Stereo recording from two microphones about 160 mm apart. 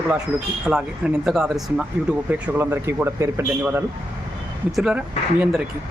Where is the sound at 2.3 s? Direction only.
15° right (ahead or behind).